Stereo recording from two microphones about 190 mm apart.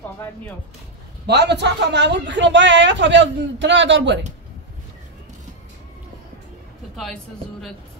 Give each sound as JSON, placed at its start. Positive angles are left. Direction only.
{"t": 1.2, "sound": "a man's voice", "side_deg": -60}